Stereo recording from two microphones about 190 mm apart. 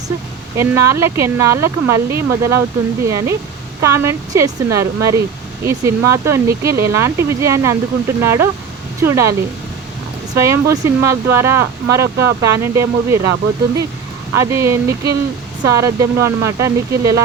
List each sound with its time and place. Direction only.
0.5 s speech: 15° right (ahead or behind)
10.3 s speech: 15° right (ahead or behind)
14.3 s speech: 15° right (ahead or behind)